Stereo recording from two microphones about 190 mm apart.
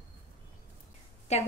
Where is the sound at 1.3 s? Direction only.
35° left (ahead or behind).